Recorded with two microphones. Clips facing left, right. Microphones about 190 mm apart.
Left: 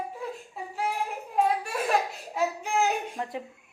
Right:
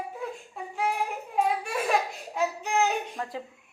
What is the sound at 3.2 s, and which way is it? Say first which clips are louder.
Speech: left 1 dB; 20° left (ahead or behind).